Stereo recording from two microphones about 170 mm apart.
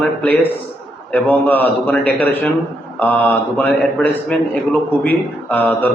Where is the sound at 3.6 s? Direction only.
10° left (ahead or behind).